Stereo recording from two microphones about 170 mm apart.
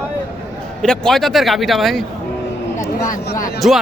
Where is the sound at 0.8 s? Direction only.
Centre (ahead or behind).